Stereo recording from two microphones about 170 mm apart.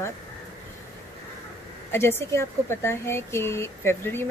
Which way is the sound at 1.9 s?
15° left (ahead or behind).